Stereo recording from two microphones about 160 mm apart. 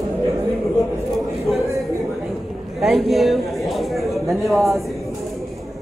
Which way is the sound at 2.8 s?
Centre (ahead or behind).